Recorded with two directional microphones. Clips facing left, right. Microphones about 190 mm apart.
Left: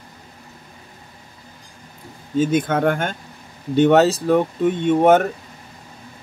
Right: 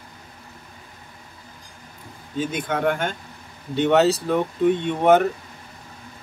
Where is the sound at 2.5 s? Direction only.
45° left (ahead or behind).